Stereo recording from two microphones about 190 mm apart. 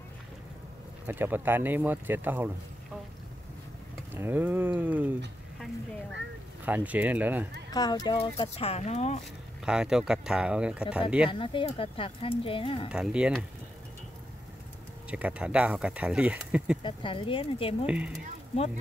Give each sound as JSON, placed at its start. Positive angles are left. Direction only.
{"t": 1.0, "sound": "speech", "side_deg": -10}
{"t": 4.1, "sound": "speech", "side_deg": -10}
{"t": 6.6, "sound": "speech", "side_deg": -10}
{"t": 7.7, "sound": "speech", "side_deg": 20}
{"t": 9.7, "sound": "speech", "side_deg": -5}
{"t": 11.2, "sound": "speech", "side_deg": 25}
{"t": 12.9, "sound": "speech", "side_deg": -5}
{"t": 15.0, "sound": "speech", "side_deg": -5}
{"t": 16.8, "sound": "speech", "side_deg": 25}
{"t": 17.8, "sound": "speech", "side_deg": -5}